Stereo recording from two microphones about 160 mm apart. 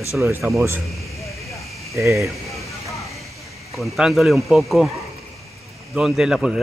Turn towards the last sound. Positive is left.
turn(degrees=0)  # may be behind; listen again after turning